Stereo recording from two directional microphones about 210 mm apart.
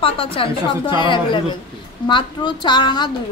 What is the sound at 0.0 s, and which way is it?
A woman's voice, 25° left (ahead or behind).